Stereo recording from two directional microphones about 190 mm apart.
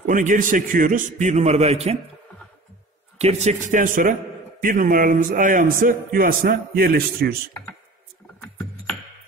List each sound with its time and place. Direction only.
0.0 s a man's voice: 45° right (ahead or behind)
3.2 s a man's voice: 35° right (ahead or behind); by 7.3 s 55° right (ahead or behind)
8.4 s music: 5° left (ahead or behind)